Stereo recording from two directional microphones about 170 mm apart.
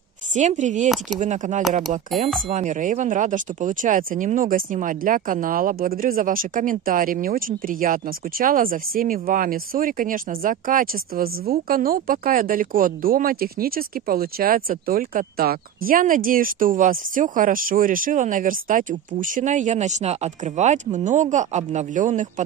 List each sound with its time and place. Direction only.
0.3 s speech: 45° right (ahead or behind)
0.8 s speech: centre (ahead or behind)
1.2 s speech: 45° right (ahead or behind)